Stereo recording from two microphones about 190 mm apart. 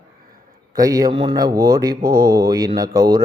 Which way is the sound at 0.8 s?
20° right (ahead or behind).